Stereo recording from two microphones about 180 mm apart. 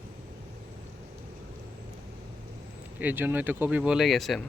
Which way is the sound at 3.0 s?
10° right (ahead or behind).